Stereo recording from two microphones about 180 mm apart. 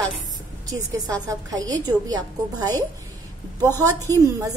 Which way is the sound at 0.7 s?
20° right (ahead or behind).